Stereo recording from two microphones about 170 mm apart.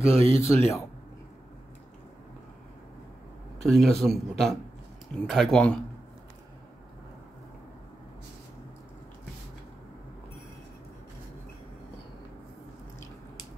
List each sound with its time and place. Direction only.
0.0 s speech: 15° left (ahead or behind)
3.6 s a man's voice: centre (ahead or behind)